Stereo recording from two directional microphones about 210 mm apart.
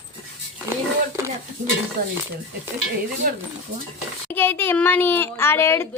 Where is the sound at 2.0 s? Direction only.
45° right (ahead or behind).